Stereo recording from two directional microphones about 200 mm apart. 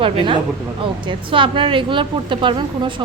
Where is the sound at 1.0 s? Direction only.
25° right (ahead or behind).